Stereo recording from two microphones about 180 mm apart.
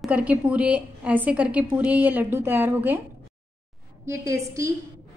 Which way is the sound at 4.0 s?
15° right (ahead or behind).